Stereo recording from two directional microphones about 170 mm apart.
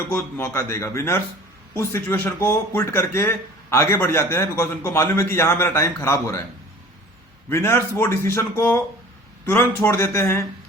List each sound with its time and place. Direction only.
0.1 s speech: 15° left (ahead or behind)
7.5 s speech: 15° left (ahead or behind)